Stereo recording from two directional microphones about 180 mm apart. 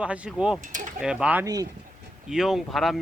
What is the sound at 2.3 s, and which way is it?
Speech, 5° right (ahead or behind).